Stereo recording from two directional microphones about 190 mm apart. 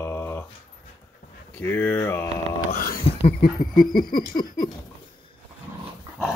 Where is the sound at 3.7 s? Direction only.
45° left (ahead or behind).